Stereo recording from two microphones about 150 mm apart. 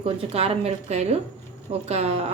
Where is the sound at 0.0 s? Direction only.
40° right (ahead or behind).